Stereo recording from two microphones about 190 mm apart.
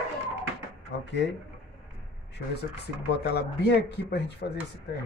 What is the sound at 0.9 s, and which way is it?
Speech, 65° left (ahead or behind).